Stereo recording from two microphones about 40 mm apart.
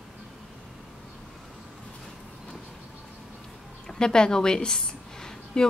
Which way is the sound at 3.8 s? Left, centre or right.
Centre.